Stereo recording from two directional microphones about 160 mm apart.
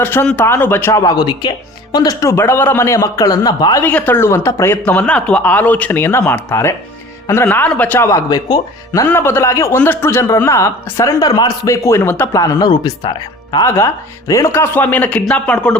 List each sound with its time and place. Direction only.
0.0 s speech: 15° left (ahead or behind)
3.8 s a man's voice: 10° left (ahead or behind); by 13.7 s 30° left (ahead or behind)
13.7 s speech: 20° left (ahead or behind)